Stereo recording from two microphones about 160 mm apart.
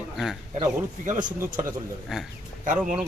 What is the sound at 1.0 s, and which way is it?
Speech, 50° right (ahead or behind).